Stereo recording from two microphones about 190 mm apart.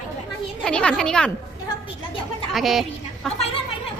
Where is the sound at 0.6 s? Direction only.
5° left (ahead or behind).